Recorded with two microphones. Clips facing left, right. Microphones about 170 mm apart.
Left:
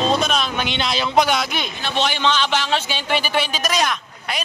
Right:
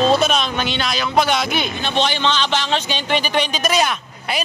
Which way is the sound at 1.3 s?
Centre (ahead or behind).